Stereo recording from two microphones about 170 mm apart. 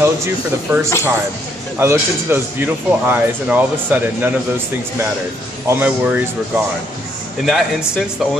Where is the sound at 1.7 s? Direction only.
10° right (ahead or behind).